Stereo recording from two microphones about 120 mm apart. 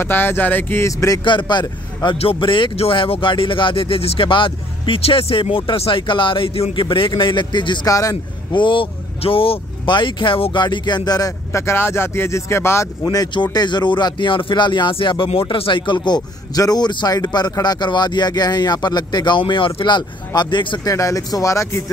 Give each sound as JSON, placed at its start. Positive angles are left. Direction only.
{"t": 0.0, "sound": "speech", "side_deg": 20}
{"t": 1.2, "sound": "speech", "side_deg": 40}
{"t": 7.9, "sound": "speech", "side_deg": 30}
{"t": 8.5, "sound": "speech", "side_deg": 45}
{"t": 13.0, "sound": "speech", "side_deg": 35}
{"t": 20.9, "sound": "speech", "side_deg": 25}